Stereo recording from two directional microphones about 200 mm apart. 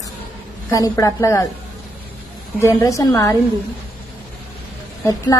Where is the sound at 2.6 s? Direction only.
15° left (ahead or behind).